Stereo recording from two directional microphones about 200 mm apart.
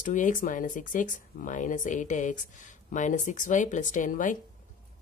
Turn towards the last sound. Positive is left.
turn(degrees=40)  # may be behind; listen again after turning